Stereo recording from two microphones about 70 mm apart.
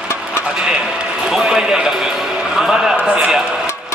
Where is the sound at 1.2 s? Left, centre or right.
Centre.